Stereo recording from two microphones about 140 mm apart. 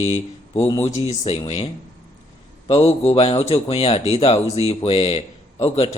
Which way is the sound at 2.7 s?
40° left (ahead or behind).